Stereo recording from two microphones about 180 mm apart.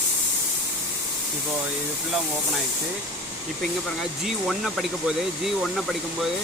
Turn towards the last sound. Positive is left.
turn(degrees=0)  # may be behind; listen again after turning